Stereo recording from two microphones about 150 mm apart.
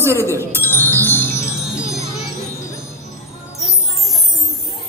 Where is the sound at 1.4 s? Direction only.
5° right (ahead or behind).